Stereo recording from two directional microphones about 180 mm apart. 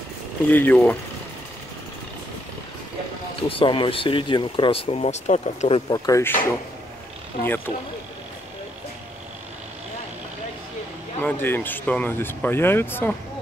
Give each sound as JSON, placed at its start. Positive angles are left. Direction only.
{"t": 0.5, "sound": "speech", "side_deg": 10}
{"t": 3.4, "sound": "speech", "side_deg": 30}
{"t": 5.9, "sound": "speech", "side_deg": 20}
{"t": 7.4, "sound": "speech", "side_deg": 10}
{"t": 11.1, "sound": "speech", "side_deg": 10}